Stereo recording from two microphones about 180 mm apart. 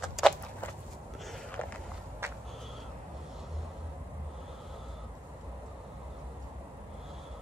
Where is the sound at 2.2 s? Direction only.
15° right (ahead or behind).